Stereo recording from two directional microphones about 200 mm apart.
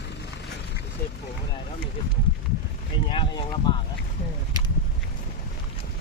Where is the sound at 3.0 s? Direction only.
25° left (ahead or behind).